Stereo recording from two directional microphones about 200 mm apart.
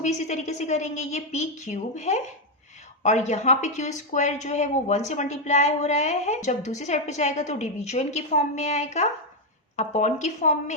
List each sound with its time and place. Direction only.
0.0 s speech: 35° left (ahead or behind)